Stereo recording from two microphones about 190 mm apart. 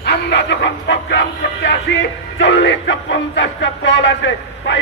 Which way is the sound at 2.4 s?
70° left (ahead or behind).